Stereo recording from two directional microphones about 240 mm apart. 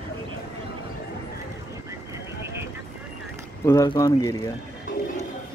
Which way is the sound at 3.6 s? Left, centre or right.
Centre.